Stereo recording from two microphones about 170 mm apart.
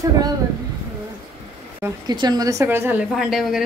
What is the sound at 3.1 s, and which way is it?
Speech, centre (ahead or behind).